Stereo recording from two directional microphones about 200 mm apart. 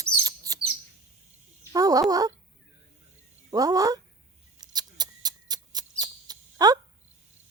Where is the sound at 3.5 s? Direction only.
20° right (ahead or behind).